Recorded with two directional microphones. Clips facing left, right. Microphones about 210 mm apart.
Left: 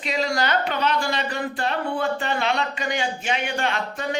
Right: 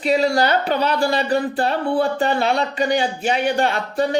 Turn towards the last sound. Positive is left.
turn(degrees=-35)  # may be behind; listen again after turning